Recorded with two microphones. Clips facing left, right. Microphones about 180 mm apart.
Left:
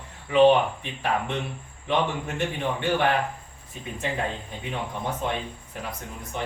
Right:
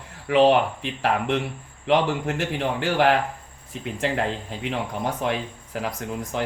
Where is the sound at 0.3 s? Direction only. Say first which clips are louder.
Even; 85° right.